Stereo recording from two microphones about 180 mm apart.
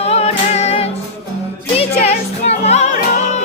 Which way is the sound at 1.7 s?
35° left (ahead or behind).